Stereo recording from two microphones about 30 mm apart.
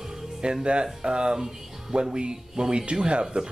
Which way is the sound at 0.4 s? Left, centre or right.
Right.